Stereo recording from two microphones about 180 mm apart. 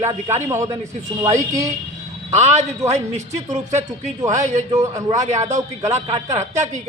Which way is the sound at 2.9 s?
40° right (ahead or behind).